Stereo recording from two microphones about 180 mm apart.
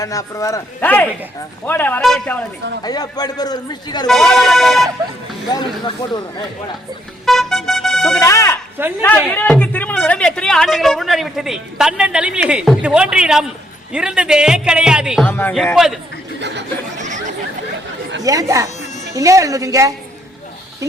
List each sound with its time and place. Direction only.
0.0 s a man's voice: 20° left (ahead or behind)
2.8 s a man's voice: 20° left (ahead or behind)
4.0 s speech: centre (ahead or behind)
5.5 s a man's voice: 25° left (ahead or behind)
7.3 s music: centre (ahead or behind)
8.2 s a sound: 15° left (ahead or behind)
9.0 s speech: 10° left (ahead or behind)
15.3 s a man's voice: 10° left (ahead or behind)
15.5 s speech: centre (ahead or behind)
17.0 s chatter: 40° right (ahead or behind)
18.2 s speech: 20° right (ahead or behind)